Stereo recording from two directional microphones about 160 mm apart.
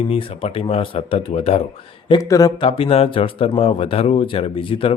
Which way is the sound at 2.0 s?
25° left (ahead or behind).